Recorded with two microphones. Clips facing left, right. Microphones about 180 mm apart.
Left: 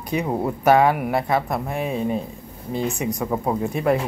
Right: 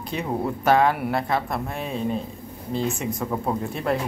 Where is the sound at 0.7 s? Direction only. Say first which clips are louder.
Left 3 dB; 10° left (ahead or behind).